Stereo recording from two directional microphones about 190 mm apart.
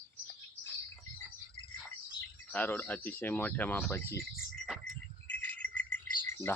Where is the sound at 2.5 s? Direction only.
10° left (ahead or behind).